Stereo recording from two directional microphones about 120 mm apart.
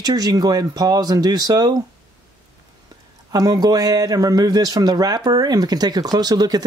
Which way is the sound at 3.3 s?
30° right (ahead or behind).